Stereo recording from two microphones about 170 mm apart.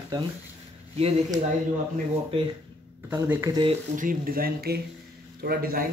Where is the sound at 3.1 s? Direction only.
15° right (ahead or behind).